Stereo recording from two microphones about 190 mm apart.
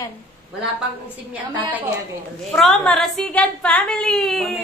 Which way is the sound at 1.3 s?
10° right (ahead or behind).